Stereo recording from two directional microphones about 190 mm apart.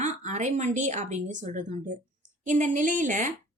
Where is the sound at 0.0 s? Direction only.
40° right (ahead or behind).